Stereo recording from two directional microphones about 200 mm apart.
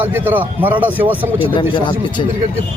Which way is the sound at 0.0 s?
10° right (ahead or behind).